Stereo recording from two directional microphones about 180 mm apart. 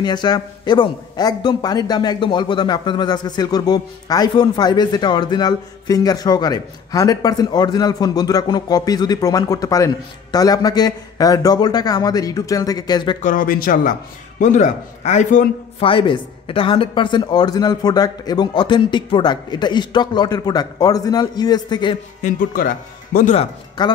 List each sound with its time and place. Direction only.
0.0 s a man's voice: 25° left (ahead or behind)
13.2 s a man's voice: 50° left (ahead or behind); by 21.9 s 25° left (ahead or behind)
22.2 s speech: 50° left (ahead or behind)
23.3 s speech: 35° left (ahead or behind)